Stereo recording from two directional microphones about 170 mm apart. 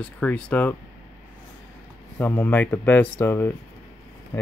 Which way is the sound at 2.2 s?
10° left (ahead or behind).